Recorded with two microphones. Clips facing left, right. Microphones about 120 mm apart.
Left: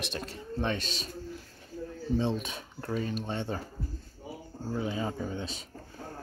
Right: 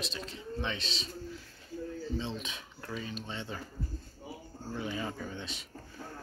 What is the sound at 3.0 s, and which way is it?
Speech, 50° left (ahead or behind).